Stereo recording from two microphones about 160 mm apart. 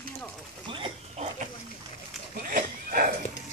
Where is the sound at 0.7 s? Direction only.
35° right (ahead or behind).